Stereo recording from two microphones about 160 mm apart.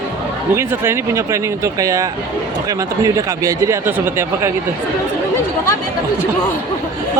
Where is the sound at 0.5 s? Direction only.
15° right (ahead or behind).